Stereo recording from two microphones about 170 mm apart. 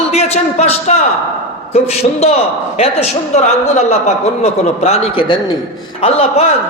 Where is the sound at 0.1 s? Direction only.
40° left (ahead or behind).